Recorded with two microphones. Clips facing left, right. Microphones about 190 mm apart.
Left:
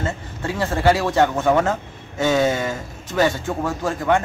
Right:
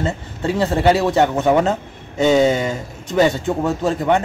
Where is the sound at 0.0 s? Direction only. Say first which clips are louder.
Right 4 dB; 20° right (ahead or behind).